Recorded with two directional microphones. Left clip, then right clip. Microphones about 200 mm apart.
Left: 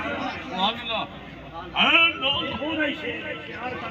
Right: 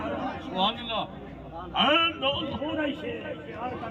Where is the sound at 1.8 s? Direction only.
20° right (ahead or behind).